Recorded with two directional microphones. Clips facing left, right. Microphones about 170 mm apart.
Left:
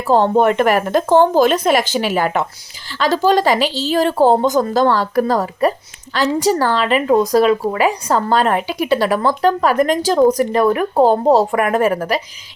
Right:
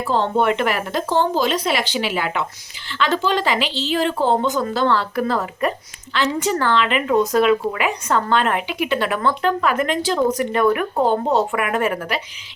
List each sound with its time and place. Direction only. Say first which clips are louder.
0.0 s speech: left 6 dB; 45° left (ahead or behind)